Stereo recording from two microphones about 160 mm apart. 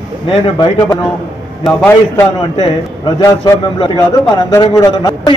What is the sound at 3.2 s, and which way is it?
A man's voice, 25° left (ahead or behind).